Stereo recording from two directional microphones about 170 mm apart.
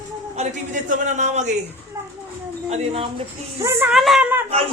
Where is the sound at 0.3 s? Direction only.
45° right (ahead or behind).